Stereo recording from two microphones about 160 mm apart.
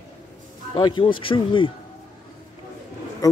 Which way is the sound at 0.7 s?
30° left (ahead or behind).